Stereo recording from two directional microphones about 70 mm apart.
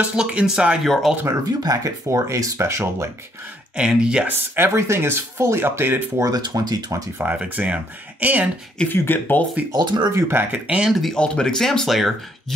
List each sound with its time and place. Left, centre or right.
0.0 s speech: centre
1.4 s speech: right
2.0 s speech: right
3.7 s speech: centre
4.3 s speech: right
4.7 s speech: right
6.2 s speech: right
7.3 s speech: centre
8.8 s speech: left
9.7 s speech: right
10.1 s speech: right
10.9 s speech: centre
11.1 s speech: centre